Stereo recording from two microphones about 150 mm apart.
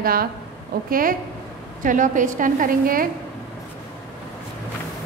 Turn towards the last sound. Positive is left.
turn(degrees=-65)  # may be behind; listen again after turning